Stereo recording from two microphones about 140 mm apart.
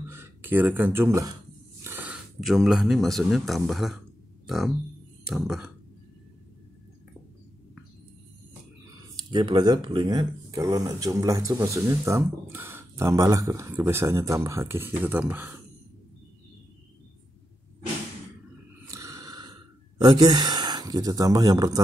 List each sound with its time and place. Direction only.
0.1 s speech: 15° right (ahead or behind)
1.8 s a sound: 15° right (ahead or behind)
2.4 s speech: centre (ahead or behind)
5.2 s speech: 5° right (ahead or behind)
9.3 s speech: 35° right (ahead or behind); by 15.6 s 15° right (ahead or behind)
18.9 s snort: 25° right (ahead or behind)
20.0 s speech: 30° right (ahead or behind)